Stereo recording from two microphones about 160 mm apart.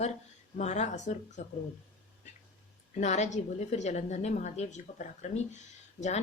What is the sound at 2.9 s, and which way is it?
Speech, 45° left (ahead or behind).